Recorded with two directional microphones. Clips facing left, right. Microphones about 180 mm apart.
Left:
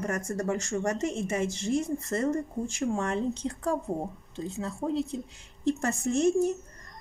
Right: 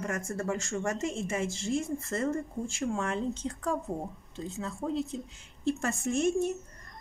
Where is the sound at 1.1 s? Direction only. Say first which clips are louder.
Left 3 dB; 20° left (ahead or behind).